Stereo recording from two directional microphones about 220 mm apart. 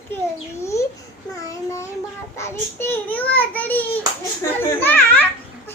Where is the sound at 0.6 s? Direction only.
15° left (ahead or behind).